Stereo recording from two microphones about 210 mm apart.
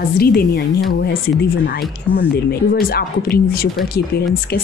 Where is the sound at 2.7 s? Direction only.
45° left (ahead or behind).